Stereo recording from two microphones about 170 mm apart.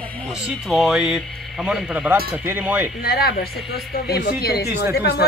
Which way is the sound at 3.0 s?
70° left (ahead or behind).